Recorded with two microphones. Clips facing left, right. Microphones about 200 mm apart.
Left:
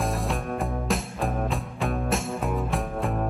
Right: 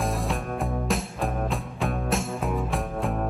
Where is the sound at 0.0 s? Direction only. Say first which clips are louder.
Even; centre (ahead or behind).